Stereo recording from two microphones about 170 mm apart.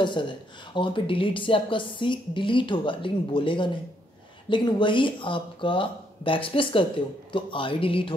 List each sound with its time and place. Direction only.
0.0 s speech: 30° left (ahead or behind)